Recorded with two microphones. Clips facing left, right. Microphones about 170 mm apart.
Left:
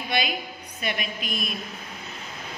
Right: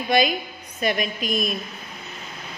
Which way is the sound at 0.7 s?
45° right (ahead or behind).